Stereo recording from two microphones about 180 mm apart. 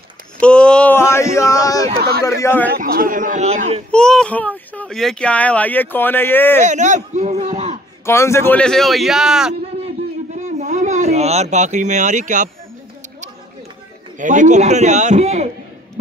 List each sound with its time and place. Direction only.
0.4 s a sound: 5° left (ahead or behind)
2.4 s speech: 10° left (ahead or behind)
2.7 s a man's voice: 55° right (ahead or behind); by 3.8 s 40° right (ahead or behind)
3.9 s speech: 5° left (ahead or behind)
6.6 s a man's voice: 40° right (ahead or behind)
8.0 s a man's voice: 15° left (ahead or behind); by 9.6 s 5° right (ahead or behind)
10.3 s speech: 40° right (ahead or behind)
14.1 s a man's voice: 45° right (ahead or behind)